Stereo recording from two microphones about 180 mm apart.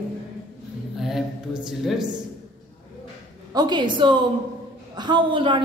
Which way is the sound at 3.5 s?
25° right (ahead or behind).